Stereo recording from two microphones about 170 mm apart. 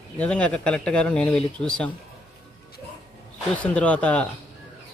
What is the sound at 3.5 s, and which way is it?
Speech, 10° left (ahead or behind).